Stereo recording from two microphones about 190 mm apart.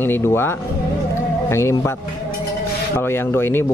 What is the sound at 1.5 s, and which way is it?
Speech, 15° left (ahead or behind).